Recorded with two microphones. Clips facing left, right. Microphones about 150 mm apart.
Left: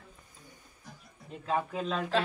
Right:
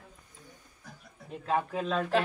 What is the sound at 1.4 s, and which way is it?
Speech, centre (ahead or behind).